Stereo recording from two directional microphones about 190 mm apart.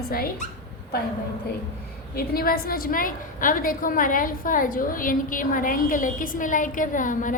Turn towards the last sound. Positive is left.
turn(degrees=45)  # may be behind; listen again after turning